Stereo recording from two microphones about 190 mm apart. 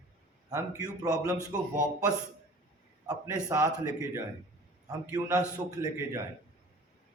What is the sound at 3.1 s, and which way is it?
A man's voice, 20° right (ahead or behind).